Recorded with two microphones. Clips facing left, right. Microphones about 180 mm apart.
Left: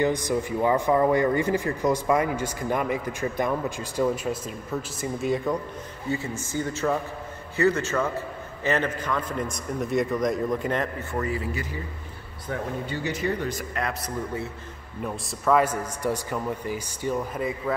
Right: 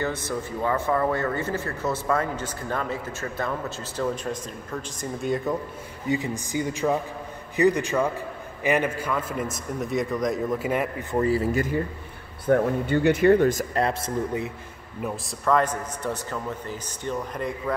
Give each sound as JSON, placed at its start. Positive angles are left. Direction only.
{"t": 0.0, "sound": "speech", "side_deg": 15}
{"t": 6.0, "sound": "a man's voice", "side_deg": -15}
{"t": 11.1, "sound": "a man's voice", "side_deg": -35}
{"t": 11.5, "sound": "speech", "side_deg": -50}
{"t": 13.7, "sound": "a man's voice", "side_deg": -30}
{"t": 15.0, "sound": "speech", "side_deg": 0}